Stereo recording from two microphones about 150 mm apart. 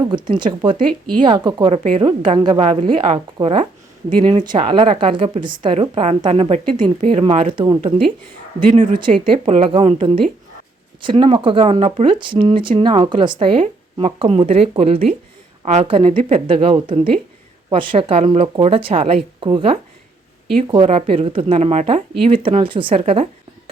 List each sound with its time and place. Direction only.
0.0 s speech: 30° right (ahead or behind)
8.6 s speech: 60° right (ahead or behind)
8.9 s a woman's voice: 35° right (ahead or behind)
15.9 s speech: 35° right (ahead or behind)
22.6 s speech: 35° right (ahead or behind)